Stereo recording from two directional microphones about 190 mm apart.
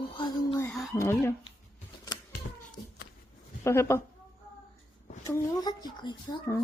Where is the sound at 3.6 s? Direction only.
15° left (ahead or behind).